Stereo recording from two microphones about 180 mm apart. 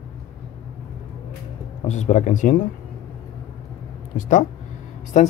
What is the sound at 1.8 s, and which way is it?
Speech, 40° left (ahead or behind).